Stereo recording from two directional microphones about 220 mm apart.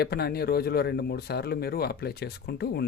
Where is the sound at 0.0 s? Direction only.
45° left (ahead or behind).